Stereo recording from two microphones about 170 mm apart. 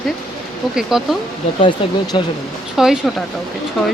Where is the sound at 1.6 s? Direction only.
25° left (ahead or behind).